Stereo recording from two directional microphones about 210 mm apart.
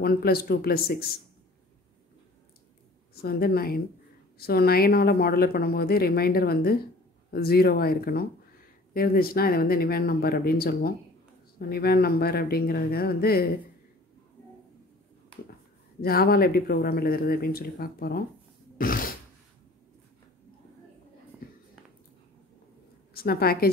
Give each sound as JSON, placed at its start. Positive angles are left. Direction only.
{"t": 0.0, "sound": "speech", "side_deg": 45}
{"t": 3.2, "sound": "speech", "side_deg": 45}
{"t": 16.0, "sound": "speech", "side_deg": 45}
{"t": 18.8, "sound": "a sound", "side_deg": 40}
{"t": 23.1, "sound": "a woman's voice", "side_deg": 45}